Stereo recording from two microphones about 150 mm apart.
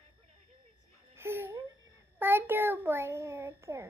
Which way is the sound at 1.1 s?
15° right (ahead or behind).